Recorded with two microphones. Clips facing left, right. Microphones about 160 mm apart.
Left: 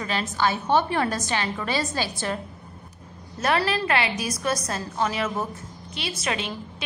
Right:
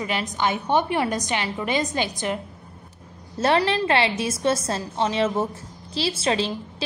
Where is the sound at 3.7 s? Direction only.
30° right (ahead or behind).